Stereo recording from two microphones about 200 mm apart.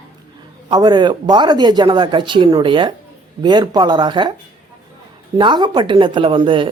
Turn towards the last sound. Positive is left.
turn(degrees=-25)  # may be behind; listen again after turning